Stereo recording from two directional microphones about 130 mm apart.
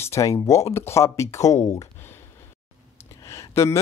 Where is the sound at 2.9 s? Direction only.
20° left (ahead or behind).